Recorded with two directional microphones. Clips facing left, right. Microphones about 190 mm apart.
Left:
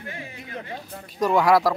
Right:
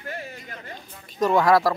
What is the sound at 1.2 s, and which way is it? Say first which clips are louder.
Speech: even; 10° left (ahead or behind).